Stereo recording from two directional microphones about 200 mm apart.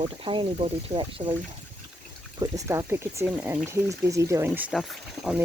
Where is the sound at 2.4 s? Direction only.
15° right (ahead or behind).